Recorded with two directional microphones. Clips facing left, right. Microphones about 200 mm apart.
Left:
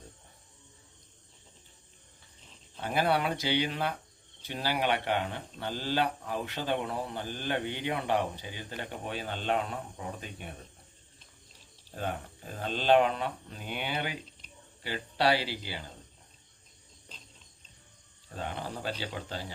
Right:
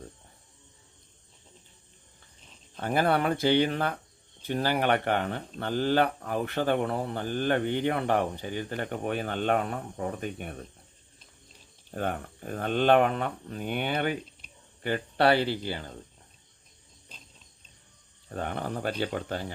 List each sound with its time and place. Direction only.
2.8 s speech: 50° right (ahead or behind)
11.9 s speech: 55° right (ahead or behind)
18.3 s speech: 55° right (ahead or behind)